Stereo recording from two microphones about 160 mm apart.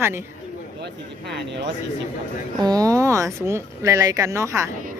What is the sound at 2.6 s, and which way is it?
A woman's voice, 25° right (ahead or behind).